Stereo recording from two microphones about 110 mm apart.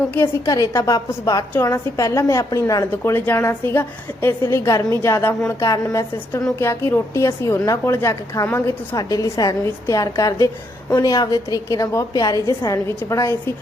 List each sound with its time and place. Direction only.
0.4 s a woman's voice: 35° left (ahead or behind)
3.0 s a woman's voice: 20° left (ahead or behind)